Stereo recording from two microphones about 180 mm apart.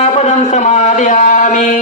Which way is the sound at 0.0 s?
40° left (ahead or behind).